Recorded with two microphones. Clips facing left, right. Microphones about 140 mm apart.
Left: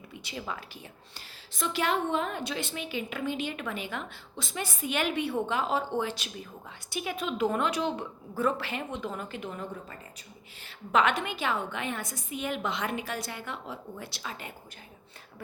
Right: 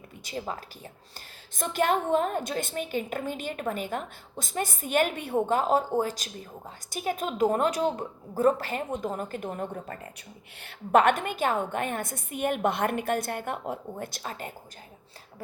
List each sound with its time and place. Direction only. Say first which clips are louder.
0.1 s a woman's voice: right 3 dB; 40° right (ahead or behind)